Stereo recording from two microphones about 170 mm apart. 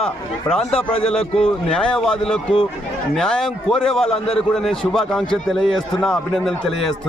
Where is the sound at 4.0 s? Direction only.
35° left (ahead or behind).